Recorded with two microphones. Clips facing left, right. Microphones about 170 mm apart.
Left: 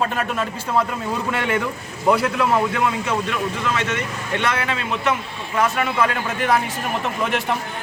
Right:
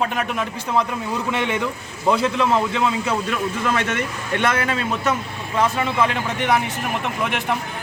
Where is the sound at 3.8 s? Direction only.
55° right (ahead or behind).